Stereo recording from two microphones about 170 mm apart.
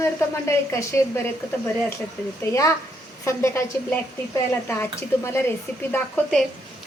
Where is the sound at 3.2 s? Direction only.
15° left (ahead or behind).